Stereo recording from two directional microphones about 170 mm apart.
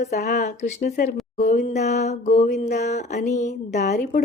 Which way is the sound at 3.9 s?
55° left (ahead or behind).